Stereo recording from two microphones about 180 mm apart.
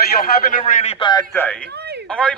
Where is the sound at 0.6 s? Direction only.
35° left (ahead or behind).